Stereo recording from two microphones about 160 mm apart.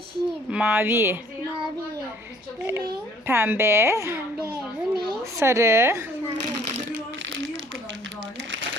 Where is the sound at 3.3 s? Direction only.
15° right (ahead or behind).